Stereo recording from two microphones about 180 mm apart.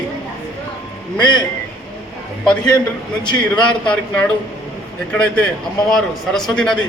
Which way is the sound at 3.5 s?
5° left (ahead or behind).